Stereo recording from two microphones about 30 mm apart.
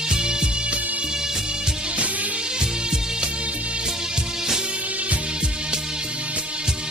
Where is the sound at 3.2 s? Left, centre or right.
Right.